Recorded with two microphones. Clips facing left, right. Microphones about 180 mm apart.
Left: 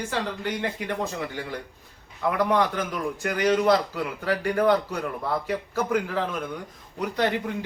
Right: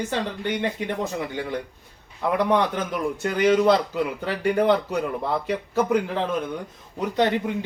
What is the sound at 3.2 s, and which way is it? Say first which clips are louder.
Speech: right 3 dB; 25° right (ahead or behind).